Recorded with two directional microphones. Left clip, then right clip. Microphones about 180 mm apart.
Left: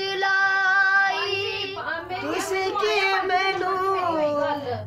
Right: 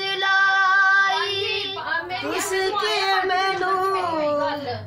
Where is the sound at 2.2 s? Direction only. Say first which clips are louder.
Right 2 dB; 10° right (ahead or behind).